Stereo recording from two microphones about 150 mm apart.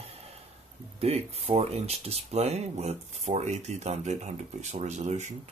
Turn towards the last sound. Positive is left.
turn(degrees=-50)  # may be behind; listen again after turning